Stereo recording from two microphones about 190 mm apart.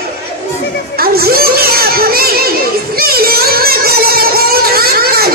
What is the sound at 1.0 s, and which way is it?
Children playing, 55° right (ahead or behind).